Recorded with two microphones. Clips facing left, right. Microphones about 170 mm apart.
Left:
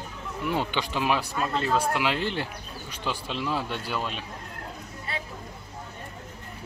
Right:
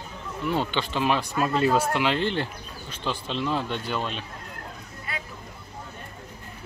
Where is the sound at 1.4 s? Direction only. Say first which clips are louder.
Right 6 dB; 10° right (ahead or behind).